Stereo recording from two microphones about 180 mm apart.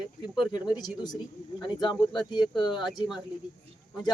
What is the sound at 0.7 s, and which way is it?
Speech, 20° left (ahead or behind).